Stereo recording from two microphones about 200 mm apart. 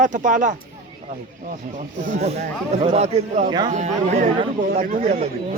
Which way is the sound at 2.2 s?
35° right (ahead or behind).